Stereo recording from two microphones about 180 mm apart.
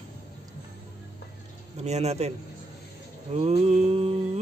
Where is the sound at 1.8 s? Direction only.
35° right (ahead or behind).